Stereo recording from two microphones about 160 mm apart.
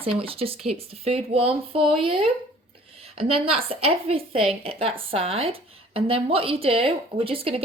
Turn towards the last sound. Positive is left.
turn(degrees=-35)  # may be behind; listen again after turning